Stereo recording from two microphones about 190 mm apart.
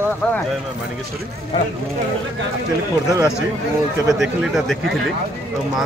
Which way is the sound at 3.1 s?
15° right (ahead or behind).